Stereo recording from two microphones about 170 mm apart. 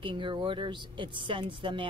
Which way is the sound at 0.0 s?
30° right (ahead or behind).